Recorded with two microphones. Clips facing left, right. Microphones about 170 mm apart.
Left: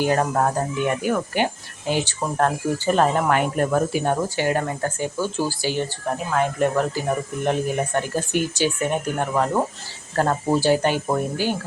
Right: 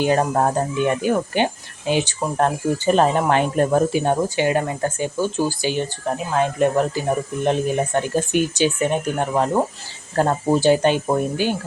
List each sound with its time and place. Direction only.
0.0 s speech: 20° right (ahead or behind)